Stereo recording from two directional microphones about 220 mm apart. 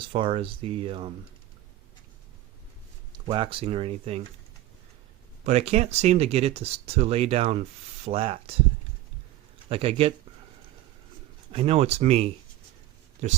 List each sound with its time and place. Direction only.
0.1 s speech: 25° right (ahead or behind)
3.2 s speech: 25° right (ahead or behind)
5.5 s speech: 30° right (ahead or behind)
9.6 s speech: 25° right (ahead or behind)
11.5 s speech: 25° right (ahead or behind)